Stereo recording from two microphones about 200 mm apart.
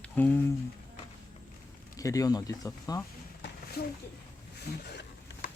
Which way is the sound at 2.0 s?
15° left (ahead or behind).